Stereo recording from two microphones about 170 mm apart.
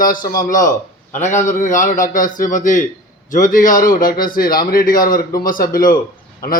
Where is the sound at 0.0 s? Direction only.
55° left (ahead or behind).